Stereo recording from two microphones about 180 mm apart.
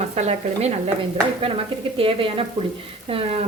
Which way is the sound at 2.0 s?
30° right (ahead or behind).